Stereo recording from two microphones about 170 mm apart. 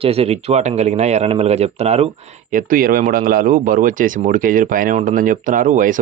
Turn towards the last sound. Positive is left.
turn(degrees=-50)  # may be behind; listen again after turning